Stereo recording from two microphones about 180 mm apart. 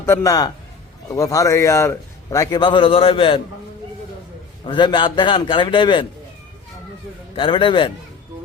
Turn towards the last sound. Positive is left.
turn(degrees=30)  # may be behind; listen again after turning